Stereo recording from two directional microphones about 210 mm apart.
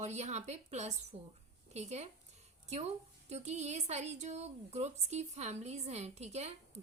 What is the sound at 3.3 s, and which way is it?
A woman's voice, 35° right (ahead or behind).